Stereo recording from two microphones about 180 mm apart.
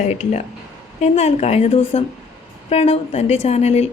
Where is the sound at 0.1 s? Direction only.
40° left (ahead or behind).